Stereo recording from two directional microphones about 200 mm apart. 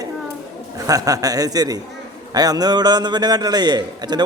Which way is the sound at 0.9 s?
15° right (ahead or behind).